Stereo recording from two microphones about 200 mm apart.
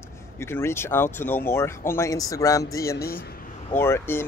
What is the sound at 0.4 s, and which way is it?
Speech, 15° left (ahead or behind).